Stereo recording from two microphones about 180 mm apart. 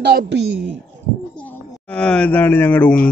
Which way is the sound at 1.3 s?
10° left (ahead or behind).